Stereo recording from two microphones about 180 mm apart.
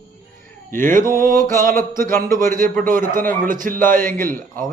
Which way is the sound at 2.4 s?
50° right (ahead or behind).